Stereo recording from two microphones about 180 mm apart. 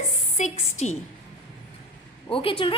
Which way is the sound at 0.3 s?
40° left (ahead or behind).